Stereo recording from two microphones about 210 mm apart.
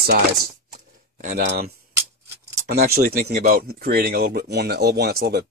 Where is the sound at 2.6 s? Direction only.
50° right (ahead or behind).